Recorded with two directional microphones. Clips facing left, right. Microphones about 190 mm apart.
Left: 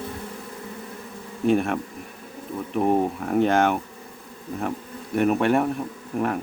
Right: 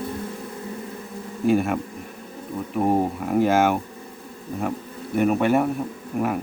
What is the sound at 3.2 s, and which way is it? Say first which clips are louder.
Bee: right 2 dB; 5° right (ahead or behind).